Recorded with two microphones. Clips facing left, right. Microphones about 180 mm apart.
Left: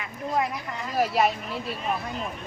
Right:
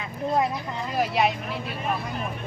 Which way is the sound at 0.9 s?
Centre (ahead or behind).